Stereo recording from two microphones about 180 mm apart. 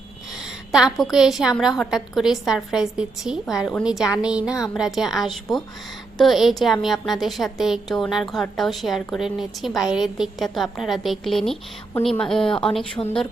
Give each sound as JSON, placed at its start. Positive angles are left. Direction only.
{"t": 0.7, "sound": "a woman's voice", "side_deg": 0}
{"t": 13.0, "sound": "speech", "side_deg": 20}